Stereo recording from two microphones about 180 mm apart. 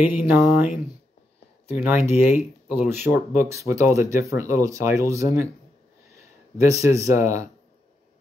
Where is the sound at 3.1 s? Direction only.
15° right (ahead or behind).